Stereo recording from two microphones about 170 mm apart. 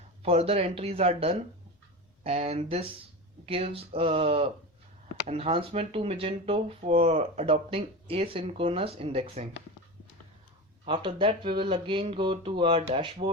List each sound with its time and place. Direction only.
0.2 s speech: 35° right (ahead or behind)
10.8 s speech: 30° right (ahead or behind)